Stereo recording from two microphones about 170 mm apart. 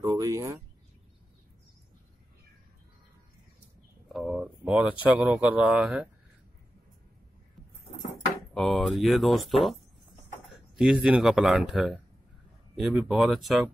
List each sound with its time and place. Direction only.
0.0 s speech: 20° right (ahead or behind)
4.1 s speech: centre (ahead or behind)
8.5 s speech: centre (ahead or behind)